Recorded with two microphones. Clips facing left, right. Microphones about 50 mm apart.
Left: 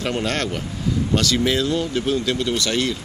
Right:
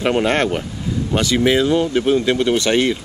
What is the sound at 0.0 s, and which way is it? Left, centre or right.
Speech, right.